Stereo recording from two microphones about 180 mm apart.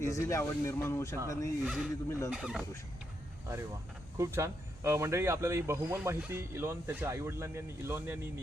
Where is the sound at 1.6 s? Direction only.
5° right (ahead or behind).